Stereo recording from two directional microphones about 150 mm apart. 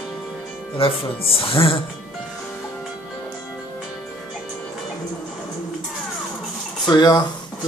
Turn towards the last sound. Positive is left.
turn(degrees=30)  # may be behind; listen again after turning